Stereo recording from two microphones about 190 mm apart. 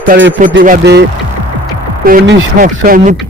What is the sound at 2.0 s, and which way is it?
A man's voice, 50° right (ahead or behind).